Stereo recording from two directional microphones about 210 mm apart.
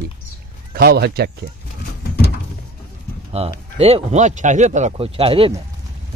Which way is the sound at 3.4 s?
30° right (ahead or behind).